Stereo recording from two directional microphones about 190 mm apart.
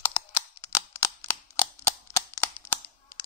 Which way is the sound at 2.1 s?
15° left (ahead or behind).